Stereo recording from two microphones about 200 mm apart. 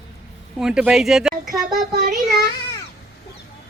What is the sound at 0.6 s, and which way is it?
Speech, 5° right (ahead or behind).